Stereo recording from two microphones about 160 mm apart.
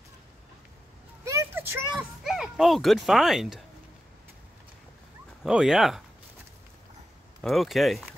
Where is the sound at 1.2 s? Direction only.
15° right (ahead or behind).